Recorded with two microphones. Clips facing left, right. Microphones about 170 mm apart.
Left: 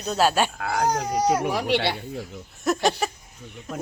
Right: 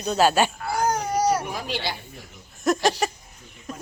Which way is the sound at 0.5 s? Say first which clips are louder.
Left 1 dB; 90° left.